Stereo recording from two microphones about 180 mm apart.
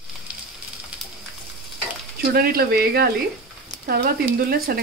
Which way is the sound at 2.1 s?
60° right (ahead or behind).